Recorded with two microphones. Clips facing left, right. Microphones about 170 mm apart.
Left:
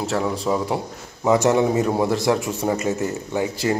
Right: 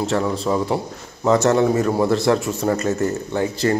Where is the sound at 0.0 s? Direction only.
5° left (ahead or behind).